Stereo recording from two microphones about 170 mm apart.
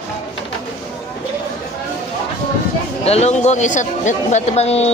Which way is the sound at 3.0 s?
40° left (ahead or behind).